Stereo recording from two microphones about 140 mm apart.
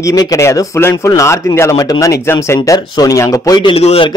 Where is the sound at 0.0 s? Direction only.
25° left (ahead or behind).